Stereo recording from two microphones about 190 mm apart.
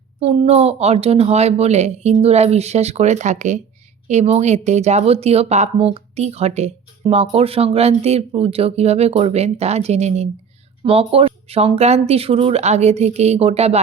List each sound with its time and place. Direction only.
0.2 s speech: 35° right (ahead or behind)